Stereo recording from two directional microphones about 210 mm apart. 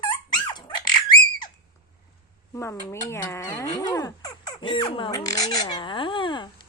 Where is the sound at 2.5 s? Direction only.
15° left (ahead or behind).